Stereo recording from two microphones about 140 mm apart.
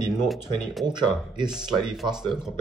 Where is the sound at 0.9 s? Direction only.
30° right (ahead or behind).